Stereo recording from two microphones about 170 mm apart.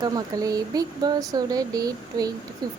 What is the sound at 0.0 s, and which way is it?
Speech, 20° right (ahead or behind).